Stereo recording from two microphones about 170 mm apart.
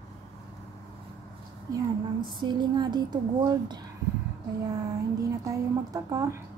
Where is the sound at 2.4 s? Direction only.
25° right (ahead or behind).